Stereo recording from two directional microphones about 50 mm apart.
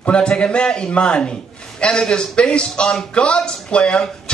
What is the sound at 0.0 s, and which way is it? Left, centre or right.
A man's voice, centre.